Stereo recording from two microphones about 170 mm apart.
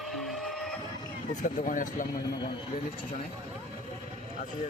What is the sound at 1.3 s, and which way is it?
Speech, 50° left (ahead or behind).